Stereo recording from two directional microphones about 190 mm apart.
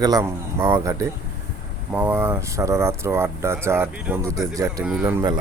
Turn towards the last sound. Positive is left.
turn(degrees=-15)  # may be behind; listen again after turning